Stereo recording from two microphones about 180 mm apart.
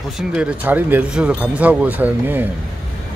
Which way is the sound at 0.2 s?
5° right (ahead or behind).